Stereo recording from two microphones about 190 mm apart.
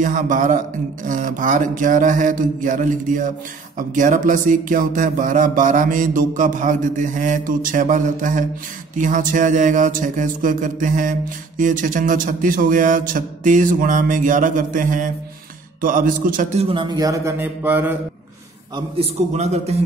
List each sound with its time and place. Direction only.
0.0 s speech: 45° right (ahead or behind)
16.6 s a sound: 25° right (ahead or behind)
18.9 s a man's voice: 35° right (ahead or behind)